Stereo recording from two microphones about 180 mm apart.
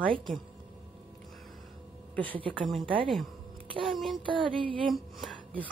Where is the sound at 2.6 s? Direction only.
Centre (ahead or behind).